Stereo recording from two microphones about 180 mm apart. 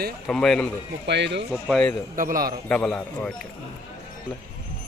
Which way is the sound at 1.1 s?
70° right (ahead or behind).